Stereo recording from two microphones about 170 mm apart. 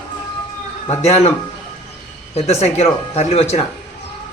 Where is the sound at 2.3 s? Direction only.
40° left (ahead or behind).